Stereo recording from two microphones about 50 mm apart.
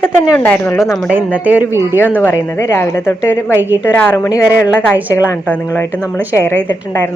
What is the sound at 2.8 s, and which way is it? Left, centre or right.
Speech, left.